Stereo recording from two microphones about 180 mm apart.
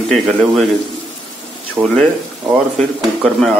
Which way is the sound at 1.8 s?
15° right (ahead or behind).